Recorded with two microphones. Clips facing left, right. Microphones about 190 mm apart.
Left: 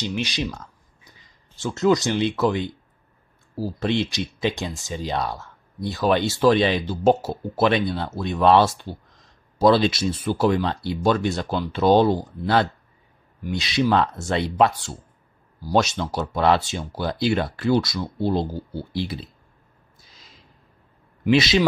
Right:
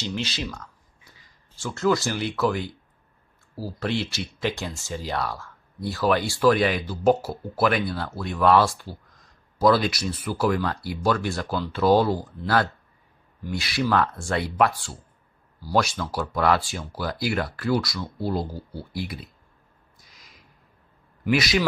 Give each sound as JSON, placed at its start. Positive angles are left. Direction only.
{"t": 0.0, "sound": "speech", "side_deg": 15}
{"t": 13.4, "sound": "speech", "side_deg": 20}
{"t": 20.0, "sound": "a sound", "side_deg": 30}
{"t": 21.2, "sound": "speech", "side_deg": 25}